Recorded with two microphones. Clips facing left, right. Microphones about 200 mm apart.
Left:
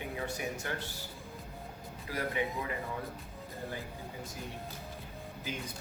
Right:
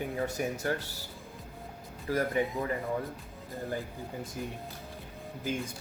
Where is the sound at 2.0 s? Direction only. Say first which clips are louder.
Right 7 dB; 45° right (ahead or behind).